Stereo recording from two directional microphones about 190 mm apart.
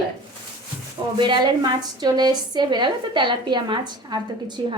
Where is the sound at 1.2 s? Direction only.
25° right (ahead or behind).